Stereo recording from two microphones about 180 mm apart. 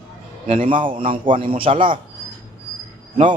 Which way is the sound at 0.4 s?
45° right (ahead or behind).